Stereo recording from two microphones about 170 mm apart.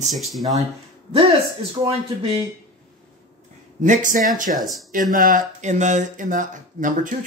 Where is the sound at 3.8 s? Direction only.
45° right (ahead or behind).